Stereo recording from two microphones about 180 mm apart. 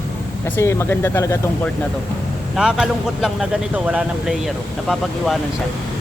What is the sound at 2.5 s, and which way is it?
Speech, 5° right (ahead or behind).